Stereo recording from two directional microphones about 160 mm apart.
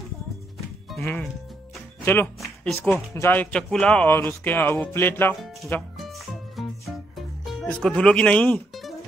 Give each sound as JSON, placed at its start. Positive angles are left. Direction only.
{"t": 0.8, "sound": "speech", "side_deg": 5}
{"t": 2.4, "sound": "speech", "side_deg": 5}
{"t": 5.3, "sound": "speech", "side_deg": 0}
{"t": 5.7, "sound": "music", "side_deg": 5}